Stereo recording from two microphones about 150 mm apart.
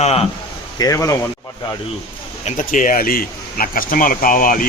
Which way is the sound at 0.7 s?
25° left (ahead or behind).